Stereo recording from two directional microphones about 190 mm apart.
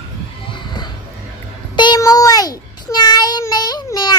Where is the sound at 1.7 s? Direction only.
20° left (ahead or behind).